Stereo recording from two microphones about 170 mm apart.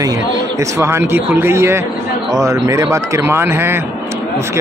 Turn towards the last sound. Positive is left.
turn(degrees=-15)  # may be behind; listen again after turning